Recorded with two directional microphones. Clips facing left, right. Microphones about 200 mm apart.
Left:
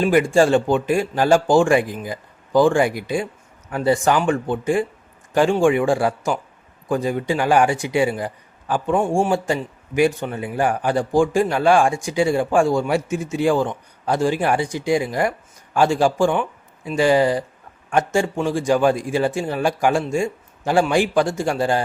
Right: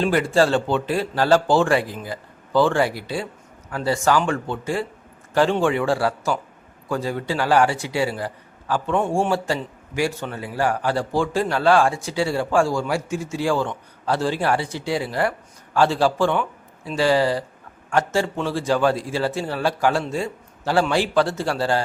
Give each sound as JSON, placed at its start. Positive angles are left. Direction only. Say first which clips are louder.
{"t": 0.0, "sound": "speech", "louder": "left 3 dB", "side_deg": 15}
{"t": 9.0, "sound": "speech", "louder": "left 2 dB", "side_deg": 0}
{"t": 9.3, "sound": "speech", "louder": "left 2 dB", "side_deg": 15}